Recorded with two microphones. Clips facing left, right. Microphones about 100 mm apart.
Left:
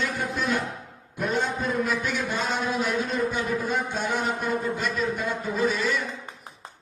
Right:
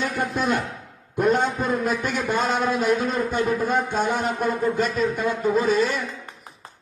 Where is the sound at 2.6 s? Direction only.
50° right (ahead or behind).